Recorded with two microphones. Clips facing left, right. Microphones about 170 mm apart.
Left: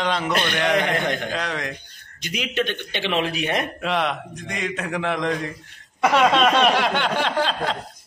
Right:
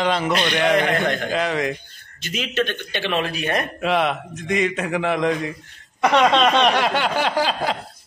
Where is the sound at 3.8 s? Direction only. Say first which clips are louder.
Right 3 dB; 5° right (ahead or behind).